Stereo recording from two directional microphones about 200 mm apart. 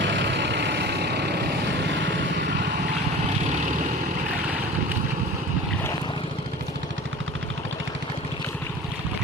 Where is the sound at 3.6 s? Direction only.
40° right (ahead or behind).